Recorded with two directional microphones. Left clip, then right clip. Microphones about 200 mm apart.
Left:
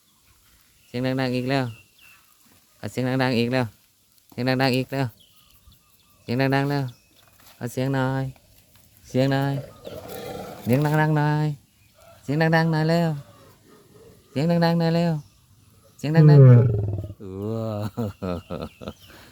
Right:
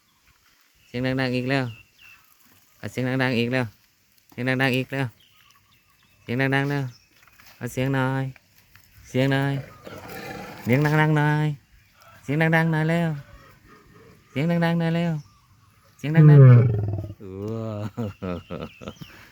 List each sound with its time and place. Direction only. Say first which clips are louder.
0.9 s speech: even; 10° left (ahead or behind)
6.2 s speech: left 1 dB; 10° left (ahead or behind)
9.0 s a sound: left 1 dB; 10° left (ahead or behind)
10.7 s speech: right 1 dB; 5° left (ahead or behind)
14.3 s speech: left 2 dB; 15° left (ahead or behind)
17.2 s a sound: left 3 dB; 10° left (ahead or behind)